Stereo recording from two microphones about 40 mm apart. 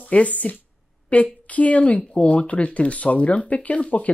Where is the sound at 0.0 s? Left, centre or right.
Left.